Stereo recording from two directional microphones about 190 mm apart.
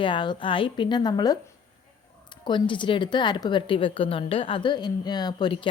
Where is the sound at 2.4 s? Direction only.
25° left (ahead or behind).